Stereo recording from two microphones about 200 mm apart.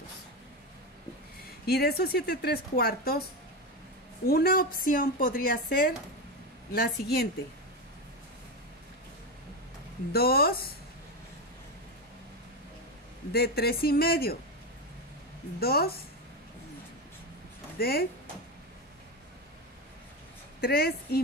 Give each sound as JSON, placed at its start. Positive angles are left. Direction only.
{"t": 1.7, "sound": "speech", "side_deg": 55}
{"t": 4.3, "sound": "speech", "side_deg": 50}
{"t": 10.1, "sound": "speech", "side_deg": 50}
{"t": 13.3, "sound": "speech", "side_deg": 50}
{"t": 15.6, "sound": "speech", "side_deg": 50}
{"t": 17.7, "sound": "speech", "side_deg": 50}
{"t": 20.6, "sound": "speech", "side_deg": 50}